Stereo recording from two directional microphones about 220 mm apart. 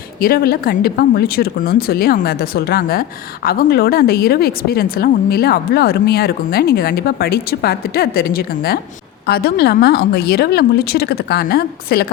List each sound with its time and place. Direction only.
0.2 s speech: 40° left (ahead or behind)